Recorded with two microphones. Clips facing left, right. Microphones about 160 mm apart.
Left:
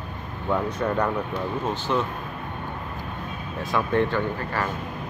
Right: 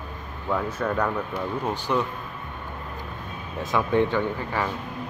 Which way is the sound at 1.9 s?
5° right (ahead or behind).